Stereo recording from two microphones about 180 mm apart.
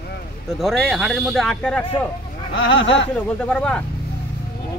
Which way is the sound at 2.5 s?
90° left.